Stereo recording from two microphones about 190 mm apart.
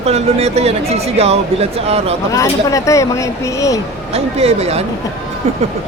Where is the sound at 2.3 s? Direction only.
15° left (ahead or behind).